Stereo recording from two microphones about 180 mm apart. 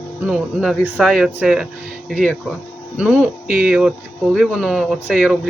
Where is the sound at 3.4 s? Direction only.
50° right (ahead or behind).